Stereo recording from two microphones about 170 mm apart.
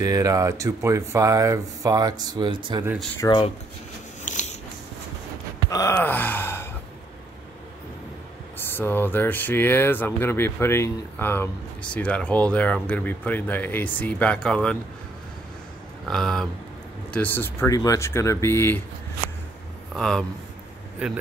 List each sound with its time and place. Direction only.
0.0 s speech: 20° right (ahead or behind)
3.3 s speech: 30° left (ahead or behind)
4.2 s biting: 45° left (ahead or behind)
5.7 s gasp: 20° left (ahead or behind)
5.9 s speech: 10° left (ahead or behind)
8.7 s speech: 10° left (ahead or behind)
16.1 s speech: centre (ahead or behind)
19.9 s speech: 5° left (ahead or behind)